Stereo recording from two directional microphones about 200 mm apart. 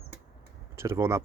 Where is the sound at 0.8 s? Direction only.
15° right (ahead or behind).